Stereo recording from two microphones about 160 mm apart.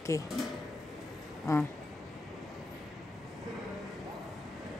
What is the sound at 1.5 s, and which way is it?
Speech, 20° left (ahead or behind).